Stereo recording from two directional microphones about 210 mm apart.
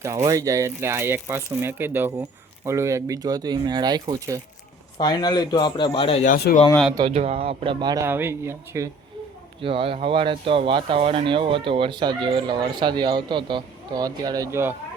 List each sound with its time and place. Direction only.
0.0 s speech: 15° right (ahead or behind)
4.9 s a man's voice: 20° left (ahead or behind)
6.3 s speech: 40° left (ahead or behind)
6.9 s speech: 25° right (ahead or behind)
9.6 s speech: 25° right (ahead or behind)